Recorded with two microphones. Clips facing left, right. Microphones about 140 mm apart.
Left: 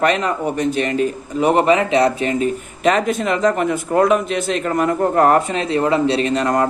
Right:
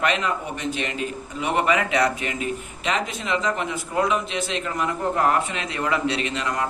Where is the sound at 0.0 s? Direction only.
40° left (ahead or behind).